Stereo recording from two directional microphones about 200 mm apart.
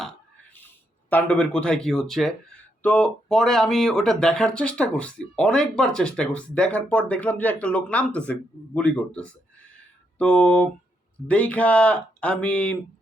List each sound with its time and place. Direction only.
1.1 s speech: 5° left (ahead or behind)